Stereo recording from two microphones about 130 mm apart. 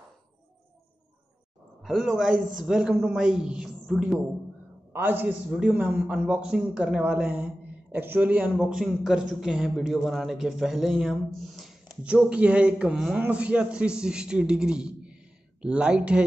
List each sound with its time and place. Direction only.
1.8 s a woman's voice: centre (ahead or behind)
4.9 s a man's voice: 15° right (ahead or behind)